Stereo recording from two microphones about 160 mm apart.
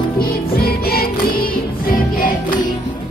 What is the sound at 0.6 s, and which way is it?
Music, 70° left (ahead or behind).